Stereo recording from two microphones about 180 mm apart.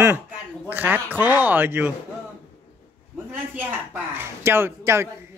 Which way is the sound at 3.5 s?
15° right (ahead or behind).